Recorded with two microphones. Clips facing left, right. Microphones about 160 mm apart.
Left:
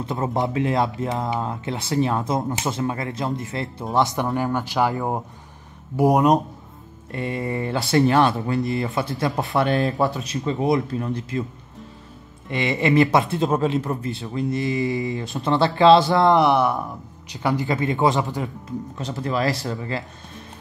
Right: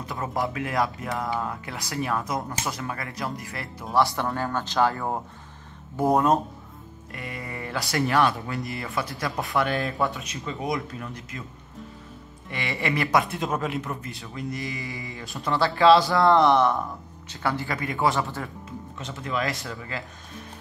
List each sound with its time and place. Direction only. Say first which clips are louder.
0.0 s speech: left 5 dB; 25° left (ahead or behind)
7.1 s speech: left 10 dB; 30° left (ahead or behind)
12.4 s speech: left 8 dB; 25° left (ahead or behind)
18.9 s speech: left 4 dB; 35° left (ahead or behind)